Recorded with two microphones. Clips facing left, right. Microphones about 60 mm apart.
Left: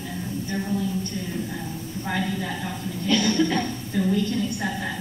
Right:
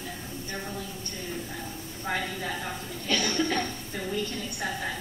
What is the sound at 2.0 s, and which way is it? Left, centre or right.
Speech, centre.